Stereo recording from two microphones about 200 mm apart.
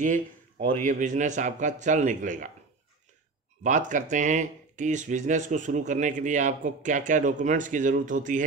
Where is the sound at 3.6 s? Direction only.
40° right (ahead or behind).